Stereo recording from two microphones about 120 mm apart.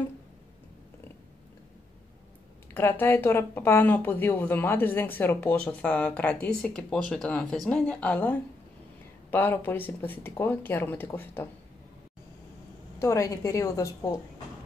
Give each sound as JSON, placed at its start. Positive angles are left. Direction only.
{"t": 2.7, "sound": "speech", "side_deg": 20}
{"t": 13.0, "sound": "a woman's voice", "side_deg": 25}